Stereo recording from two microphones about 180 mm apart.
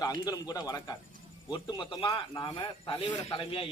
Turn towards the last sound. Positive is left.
turn(degrees=30)  # may be behind; listen again after turning